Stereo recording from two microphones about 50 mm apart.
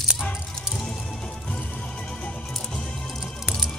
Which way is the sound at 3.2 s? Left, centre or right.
Centre.